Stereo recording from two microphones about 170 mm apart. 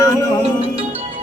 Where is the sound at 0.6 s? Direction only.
35° right (ahead or behind).